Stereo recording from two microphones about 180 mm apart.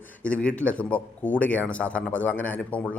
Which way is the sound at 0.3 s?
5° left (ahead or behind).